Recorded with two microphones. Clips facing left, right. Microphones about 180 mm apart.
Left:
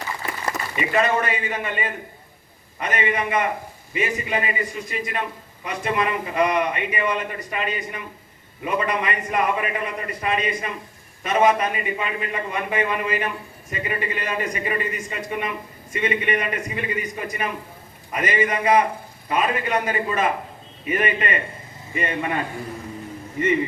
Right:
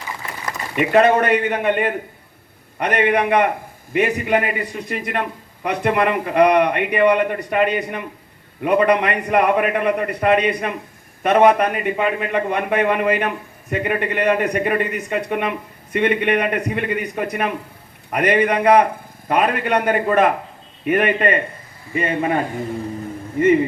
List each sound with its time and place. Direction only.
0.8 s a man's voice: 65° right (ahead or behind); by 22.4 s 40° right (ahead or behind)